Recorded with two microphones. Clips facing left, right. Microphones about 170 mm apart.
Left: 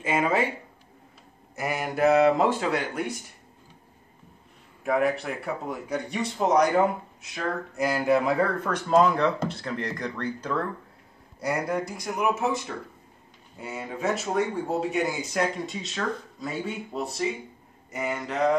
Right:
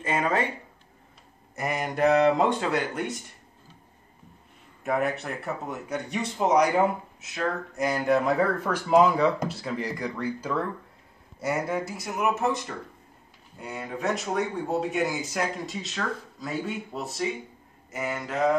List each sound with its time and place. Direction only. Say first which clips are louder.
0.0 s speech: left 2 dB; 10° left (ahead or behind)
1.5 s speech: even; centre (ahead or behind)
4.8 s speech: left 2 dB; centre (ahead or behind)